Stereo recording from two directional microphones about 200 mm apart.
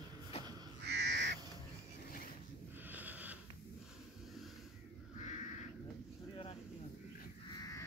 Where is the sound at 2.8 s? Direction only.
10° right (ahead or behind).